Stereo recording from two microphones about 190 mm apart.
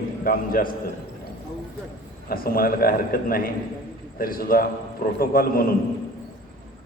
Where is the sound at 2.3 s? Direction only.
50° left (ahead or behind).